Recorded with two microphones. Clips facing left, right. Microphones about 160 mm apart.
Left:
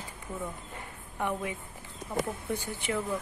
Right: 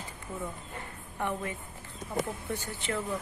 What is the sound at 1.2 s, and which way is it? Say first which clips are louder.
A woman's voice: left 1 dB; 10° left (ahead or behind).